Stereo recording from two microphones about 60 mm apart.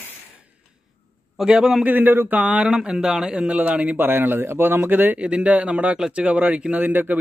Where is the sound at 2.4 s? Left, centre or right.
Centre.